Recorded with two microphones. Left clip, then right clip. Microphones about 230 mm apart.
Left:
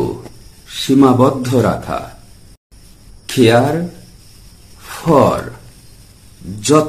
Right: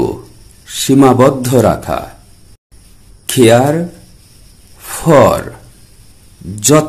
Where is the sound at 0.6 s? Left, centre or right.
Right.